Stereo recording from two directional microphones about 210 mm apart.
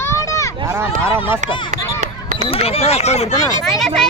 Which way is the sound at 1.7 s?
35° right (ahead or behind).